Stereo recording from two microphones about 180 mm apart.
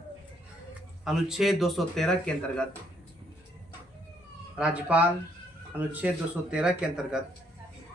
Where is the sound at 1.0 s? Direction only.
Centre (ahead or behind).